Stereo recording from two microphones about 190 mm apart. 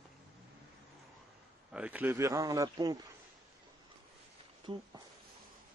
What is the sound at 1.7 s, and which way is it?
A man's voice, 10° right (ahead or behind).